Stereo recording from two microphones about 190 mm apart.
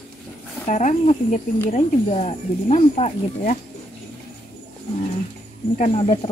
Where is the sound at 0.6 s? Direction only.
40° left (ahead or behind).